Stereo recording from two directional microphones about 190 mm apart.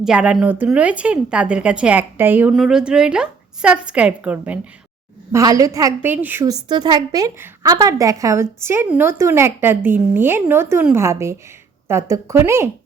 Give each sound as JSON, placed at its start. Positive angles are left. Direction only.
{"t": 0.0, "sound": "a woman's voice", "side_deg": -5}
{"t": 5.3, "sound": "a woman's voice", "side_deg": -15}